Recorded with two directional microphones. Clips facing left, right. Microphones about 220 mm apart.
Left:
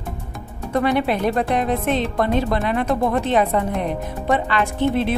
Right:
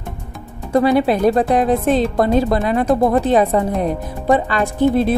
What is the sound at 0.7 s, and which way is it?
Speech, 35° right (ahead or behind).